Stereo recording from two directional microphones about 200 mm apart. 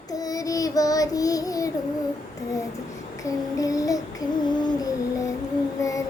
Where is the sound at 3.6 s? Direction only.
15° left (ahead or behind).